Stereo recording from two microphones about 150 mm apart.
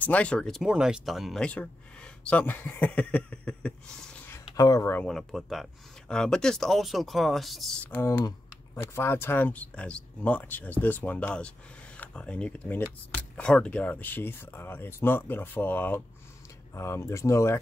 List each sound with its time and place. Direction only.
0.0 s speech: 10° left (ahead or behind)
4.3 s a sound: 25° left (ahead or behind)
5.0 s speech: centre (ahead or behind)
7.9 s speech: 15° left (ahead or behind)